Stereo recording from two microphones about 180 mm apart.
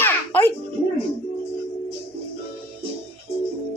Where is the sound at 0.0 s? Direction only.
10° left (ahead or behind).